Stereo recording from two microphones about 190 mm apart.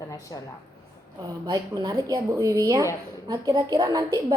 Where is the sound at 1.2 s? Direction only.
20° right (ahead or behind).